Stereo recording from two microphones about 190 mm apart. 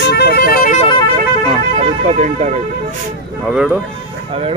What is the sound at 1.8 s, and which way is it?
Speech, 40° right (ahead or behind).